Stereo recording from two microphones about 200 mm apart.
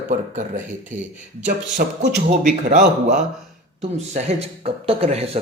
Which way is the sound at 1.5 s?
40° right (ahead or behind).